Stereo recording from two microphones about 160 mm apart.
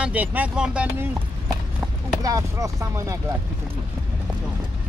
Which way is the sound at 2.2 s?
20° right (ahead or behind).